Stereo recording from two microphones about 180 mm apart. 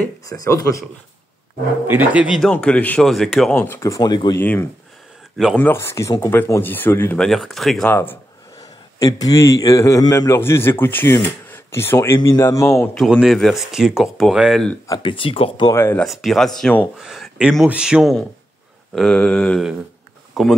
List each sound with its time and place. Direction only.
0.0 s speech: 20° left (ahead or behind)
1.9 s speech: 10° right (ahead or behind)
2.5 s a man's voice: 5° left (ahead or behind); by 4.4 s 25° left (ahead or behind)
4.4 s a man's voice: 10° left (ahead or behind)
7.2 s a man's voice: centre (ahead or behind)
12.9 s speech: centre (ahead or behind)
14.9 s speech: 25° left (ahead or behind)
15.8 s a man's voice: 10° left (ahead or behind)
16.1 s a man's voice: centre (ahead or behind)